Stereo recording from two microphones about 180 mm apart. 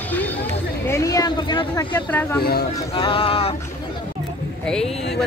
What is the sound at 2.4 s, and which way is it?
Speech, 60° left (ahead or behind).